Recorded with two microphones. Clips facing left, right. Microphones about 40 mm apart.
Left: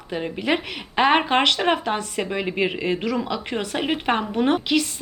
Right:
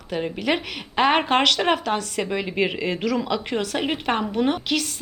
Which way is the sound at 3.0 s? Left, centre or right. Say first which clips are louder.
Right 1 dB; centre.